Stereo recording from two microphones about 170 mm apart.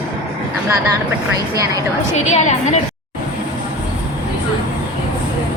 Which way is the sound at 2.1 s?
40° left (ahead or behind).